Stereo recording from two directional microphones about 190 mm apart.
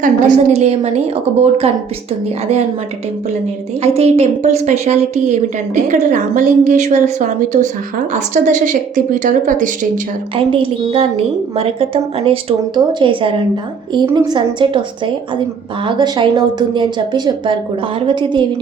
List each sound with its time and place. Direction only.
0.0 s a woman's voice: 40° right (ahead or behind)
3.8 s a woman's voice: 35° right (ahead or behind)
10.3 s a woman's voice: 30° right (ahead or behind)